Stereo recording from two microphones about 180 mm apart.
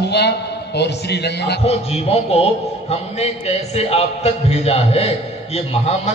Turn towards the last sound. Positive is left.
turn(degrees=35)  # may be behind; listen again after turning